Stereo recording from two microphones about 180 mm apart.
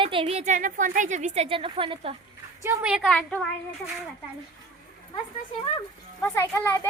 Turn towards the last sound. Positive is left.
turn(degrees=10)  # may be behind; listen again after turning